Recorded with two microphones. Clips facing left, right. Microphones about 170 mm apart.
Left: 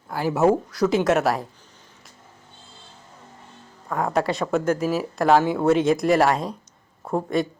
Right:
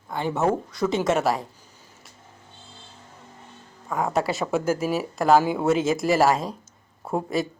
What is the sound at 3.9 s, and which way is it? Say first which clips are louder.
Speech: left 1 dB; centre (ahead or behind).